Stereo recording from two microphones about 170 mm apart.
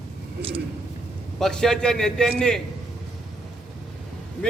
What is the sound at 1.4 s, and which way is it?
A man's voice, 5° left (ahead or behind).